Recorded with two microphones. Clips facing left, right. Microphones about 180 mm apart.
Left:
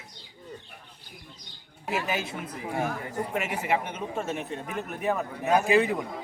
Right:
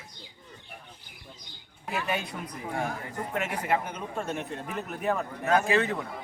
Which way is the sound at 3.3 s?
10° left (ahead or behind).